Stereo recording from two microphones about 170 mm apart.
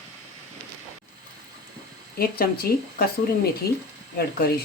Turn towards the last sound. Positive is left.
turn(degrees=65)  # may be behind; listen again after turning